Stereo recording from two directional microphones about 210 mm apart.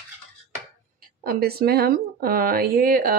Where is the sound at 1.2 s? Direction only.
45° right (ahead or behind).